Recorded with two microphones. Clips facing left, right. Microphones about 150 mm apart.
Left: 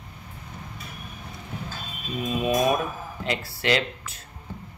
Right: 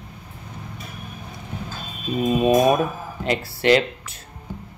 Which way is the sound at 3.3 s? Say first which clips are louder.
Right 7 dB; 50° right (ahead or behind).